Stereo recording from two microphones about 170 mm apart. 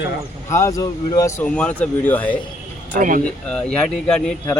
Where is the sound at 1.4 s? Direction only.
5° left (ahead or behind).